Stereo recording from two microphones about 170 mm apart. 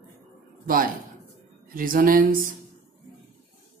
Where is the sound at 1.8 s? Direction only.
55° right (ahead or behind).